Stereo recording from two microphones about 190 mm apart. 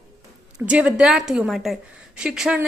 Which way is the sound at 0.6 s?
5° right (ahead or behind).